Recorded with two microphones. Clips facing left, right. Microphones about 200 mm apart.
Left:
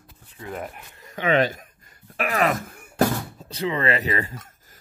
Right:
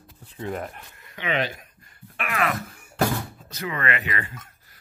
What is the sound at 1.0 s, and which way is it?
Speech, 45° left (ahead or behind).